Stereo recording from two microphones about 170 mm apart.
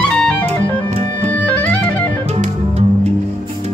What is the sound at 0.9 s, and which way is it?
Music, 40° right (ahead or behind).